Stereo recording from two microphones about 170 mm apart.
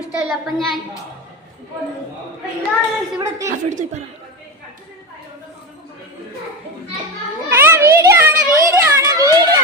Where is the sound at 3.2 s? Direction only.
20° right (ahead or behind).